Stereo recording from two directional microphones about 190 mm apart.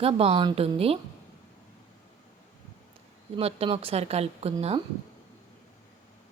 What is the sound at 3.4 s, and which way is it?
A woman's voice, 30° right (ahead or behind).